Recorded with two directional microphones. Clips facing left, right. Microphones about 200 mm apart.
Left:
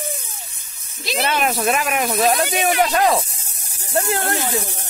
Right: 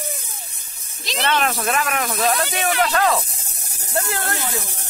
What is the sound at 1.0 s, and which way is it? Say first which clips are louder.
Speech: left 1 dB; 10° left (ahead or behind).